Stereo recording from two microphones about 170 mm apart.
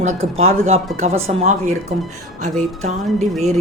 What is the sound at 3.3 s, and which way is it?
Speech, centre (ahead or behind).